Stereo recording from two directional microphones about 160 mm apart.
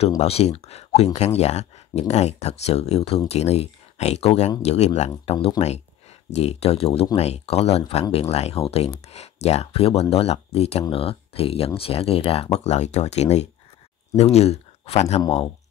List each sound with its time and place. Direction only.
0.2 s speech: 40° left (ahead or behind)